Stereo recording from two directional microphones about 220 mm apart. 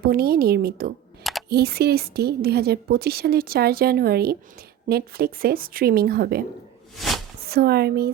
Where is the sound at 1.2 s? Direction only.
Centre (ahead or behind).